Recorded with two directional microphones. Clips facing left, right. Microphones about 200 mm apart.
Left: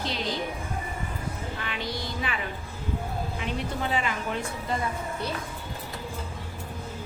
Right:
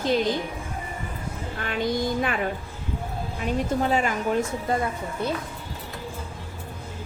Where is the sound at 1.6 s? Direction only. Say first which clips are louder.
Right 12 dB; 50° right (ahead or behind).